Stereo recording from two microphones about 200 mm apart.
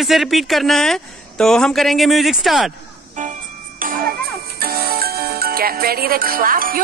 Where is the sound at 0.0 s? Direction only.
Centre (ahead or behind).